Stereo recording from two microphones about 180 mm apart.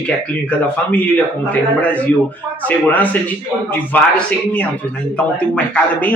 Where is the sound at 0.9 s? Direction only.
10° left (ahead or behind).